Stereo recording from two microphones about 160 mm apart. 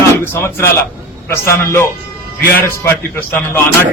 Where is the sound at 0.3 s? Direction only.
15° left (ahead or behind).